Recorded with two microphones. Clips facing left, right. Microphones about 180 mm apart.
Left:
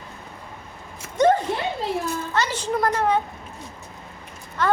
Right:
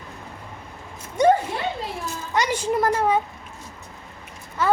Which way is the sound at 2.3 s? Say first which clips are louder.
Right 4 dB; 10° right (ahead or behind).